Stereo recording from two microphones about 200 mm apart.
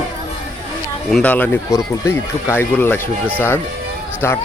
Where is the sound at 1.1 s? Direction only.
5° left (ahead or behind).